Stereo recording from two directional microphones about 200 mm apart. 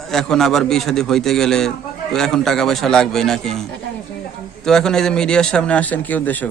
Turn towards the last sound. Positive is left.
turn(degrees=10)  # may be behind; listen again after turning